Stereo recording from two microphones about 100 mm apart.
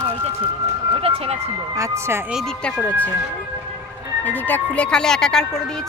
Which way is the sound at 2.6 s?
10° left (ahead or behind).